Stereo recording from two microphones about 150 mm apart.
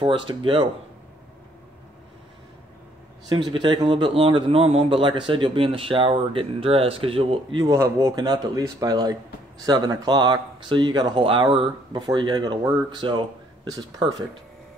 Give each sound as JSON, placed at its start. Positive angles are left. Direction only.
{"t": 0.0, "sound": "a man's voice", "side_deg": -35}
{"t": 3.3, "sound": "a man's voice", "side_deg": -30}
{"t": 7.7, "sound": "a man's voice", "side_deg": -20}